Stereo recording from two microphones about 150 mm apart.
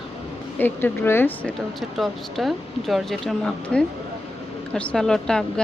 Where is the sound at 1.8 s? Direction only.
Centre (ahead or behind).